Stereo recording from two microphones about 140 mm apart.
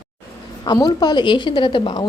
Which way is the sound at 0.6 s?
30° left (ahead or behind).